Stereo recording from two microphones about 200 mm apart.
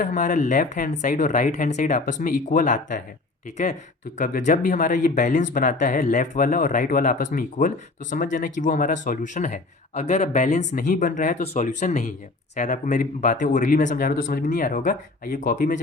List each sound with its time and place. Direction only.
0.0 s speech: 40° left (ahead or behind)
4.2 s speech: 40° left (ahead or behind)